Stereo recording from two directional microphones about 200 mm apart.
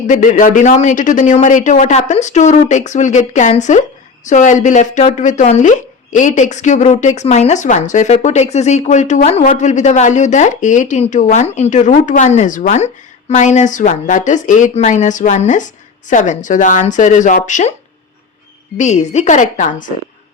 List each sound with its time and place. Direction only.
0.1 s speech: 40° left (ahead or behind)
18.8 s speech: 35° left (ahead or behind)